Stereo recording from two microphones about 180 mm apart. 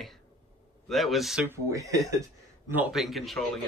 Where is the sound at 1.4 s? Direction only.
15° right (ahead or behind); by 3.5 s centre (ahead or behind).